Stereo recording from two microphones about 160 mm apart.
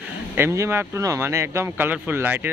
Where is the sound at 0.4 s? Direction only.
15° right (ahead or behind).